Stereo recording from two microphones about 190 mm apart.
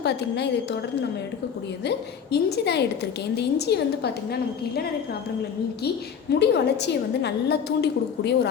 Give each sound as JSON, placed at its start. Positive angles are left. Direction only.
{"t": 0.0, "sound": "a woman's voice", "side_deg": 60}
{"t": 1.8, "sound": "a woman's voice", "side_deg": 60}
{"t": 6.4, "sound": "a woman's voice", "side_deg": 60}